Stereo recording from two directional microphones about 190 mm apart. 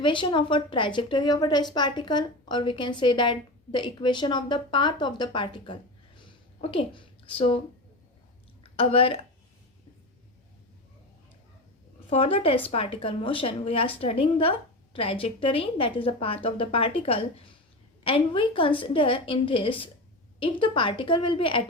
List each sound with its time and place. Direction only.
0.0 s a woman's voice: 25° left (ahead or behind)
8.7 s speech: 30° left (ahead or behind)
12.1 s a woman's voice: 30° left (ahead or behind)